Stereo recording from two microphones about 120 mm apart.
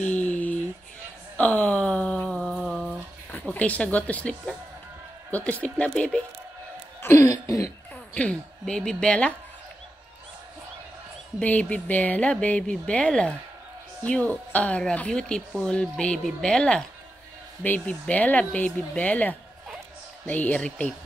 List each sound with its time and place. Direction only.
0.1 s a sound: 15° left (ahead or behind); by 2.9 s 5° right (ahead or behind)
3.3 s speech: 10° left (ahead or behind)
7.0 s chuckle: 20° left (ahead or behind)
8.1 s speech: 10° left (ahead or behind)
11.3 s speech: 10° left (ahead or behind)